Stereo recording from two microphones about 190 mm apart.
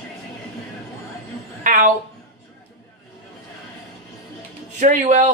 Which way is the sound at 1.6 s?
40° right (ahead or behind).